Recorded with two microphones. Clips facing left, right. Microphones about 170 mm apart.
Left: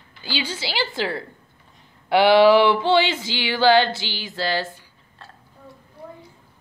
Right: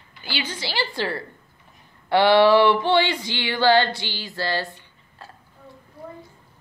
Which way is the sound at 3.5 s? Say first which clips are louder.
Left 2 dB; 5° left (ahead or behind).